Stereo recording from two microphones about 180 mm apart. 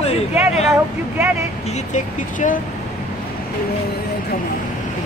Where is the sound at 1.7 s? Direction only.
45° left (ahead or behind).